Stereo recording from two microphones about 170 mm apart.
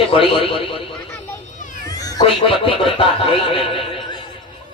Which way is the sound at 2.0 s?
30° left (ahead or behind).